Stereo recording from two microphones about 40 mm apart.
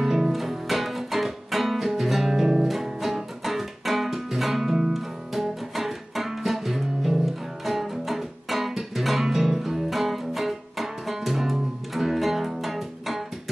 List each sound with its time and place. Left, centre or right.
0.0 s music: centre